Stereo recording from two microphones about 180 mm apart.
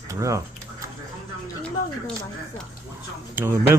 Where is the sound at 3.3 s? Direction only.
10° right (ahead or behind).